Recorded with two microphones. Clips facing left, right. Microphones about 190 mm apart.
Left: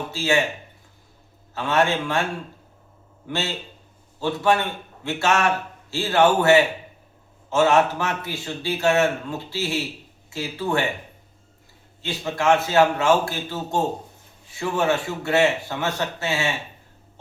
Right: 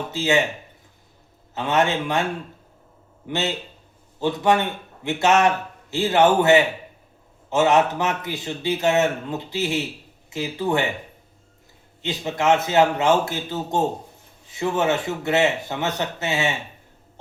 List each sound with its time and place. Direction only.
0.1 s a man's voice: 20° right (ahead or behind)
1.5 s a man's voice: 20° right (ahead or behind)
3.2 s a man's voice: 20° right (ahead or behind)
12.0 s a man's voice: 20° right (ahead or behind)